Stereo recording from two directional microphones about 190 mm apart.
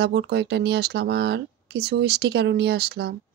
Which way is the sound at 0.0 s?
60° right (ahead or behind).